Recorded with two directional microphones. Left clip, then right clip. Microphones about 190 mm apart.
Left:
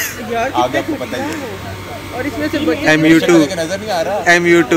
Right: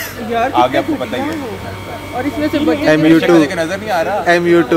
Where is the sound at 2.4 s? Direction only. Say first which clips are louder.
Right 2 dB; 55° right (ahead or behind).